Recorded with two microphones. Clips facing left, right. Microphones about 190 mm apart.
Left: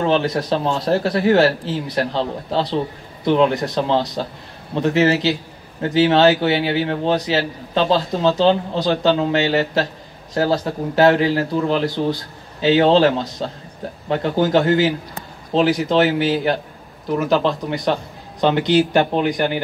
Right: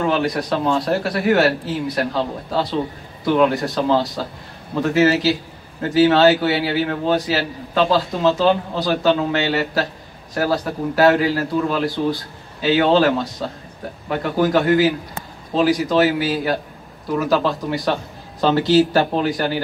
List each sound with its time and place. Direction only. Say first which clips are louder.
0.0 s a man's voice: left 1 dB; 25° left (ahead or behind)
17.7 s speech: left 1 dB; centre (ahead or behind)
18.4 s a man's voice: right 1 dB; 20° left (ahead or behind)